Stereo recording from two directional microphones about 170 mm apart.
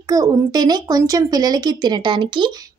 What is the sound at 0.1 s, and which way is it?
Speech, 20° right (ahead or behind).